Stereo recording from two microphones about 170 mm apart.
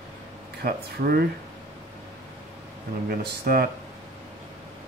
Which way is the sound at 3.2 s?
65° right (ahead or behind).